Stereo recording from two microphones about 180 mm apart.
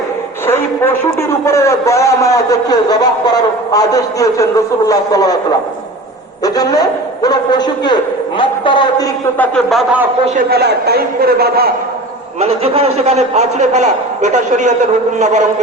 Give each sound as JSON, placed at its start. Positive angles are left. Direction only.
{"t": 0.4, "sound": "a man's voice", "side_deg": 15}
{"t": 6.4, "sound": "a man's voice", "side_deg": 20}
{"t": 9.4, "sound": "speech", "side_deg": 0}
{"t": 10.5, "sound": "a man's voice", "side_deg": -65}
{"t": 12.4, "sound": "a man's voice", "side_deg": -35}